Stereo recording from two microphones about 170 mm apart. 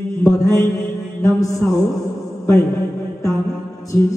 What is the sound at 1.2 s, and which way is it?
Speech, 20° left (ahead or behind).